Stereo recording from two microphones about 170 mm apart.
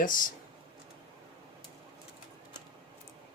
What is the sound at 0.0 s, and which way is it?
Speech, 55° left (ahead or behind).